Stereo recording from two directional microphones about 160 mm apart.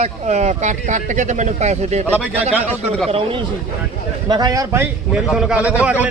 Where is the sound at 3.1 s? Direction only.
30° right (ahead or behind).